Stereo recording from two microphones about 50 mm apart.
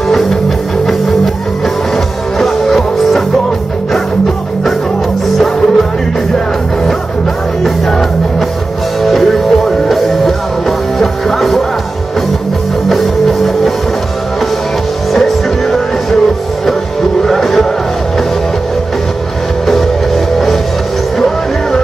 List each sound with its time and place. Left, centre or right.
0.1 s music: centre
2.3 s music: centre
9.0 s music: centre
12.9 s music: centre
15.1 s music: centre
17.2 s music: centre